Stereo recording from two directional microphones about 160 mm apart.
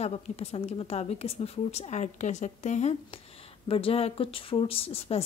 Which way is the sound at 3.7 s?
35° left (ahead or behind).